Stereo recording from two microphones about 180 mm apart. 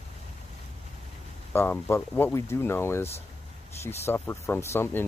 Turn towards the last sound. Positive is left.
turn(degrees=15)  # may be behind; listen again after turning